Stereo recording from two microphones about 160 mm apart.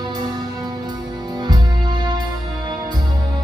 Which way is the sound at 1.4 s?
25° right (ahead or behind).